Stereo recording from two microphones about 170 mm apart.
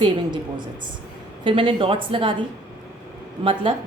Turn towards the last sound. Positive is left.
turn(degrees=-30)  # may be behind; listen again after turning